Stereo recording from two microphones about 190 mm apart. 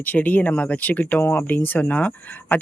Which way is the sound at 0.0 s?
10° left (ahead or behind).